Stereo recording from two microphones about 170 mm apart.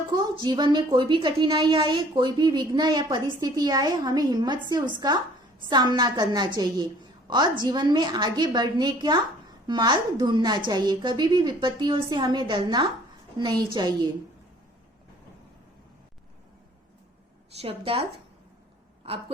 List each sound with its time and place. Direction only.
0.1 s a woman's voice: 25° right (ahead or behind)
17.6 s speech: 35° right (ahead or behind)